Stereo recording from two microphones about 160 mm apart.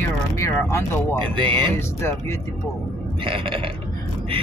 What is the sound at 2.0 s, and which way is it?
Speech, 15° left (ahead or behind).